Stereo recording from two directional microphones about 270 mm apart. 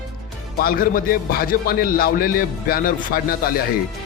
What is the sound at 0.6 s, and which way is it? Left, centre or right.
A man's voice, left.